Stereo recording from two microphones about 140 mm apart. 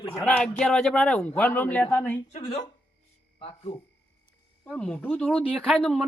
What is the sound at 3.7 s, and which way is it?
Speech, 45° left (ahead or behind).